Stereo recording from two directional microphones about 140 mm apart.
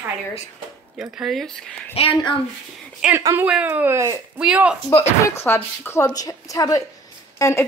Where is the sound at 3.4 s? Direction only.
10° right (ahead or behind).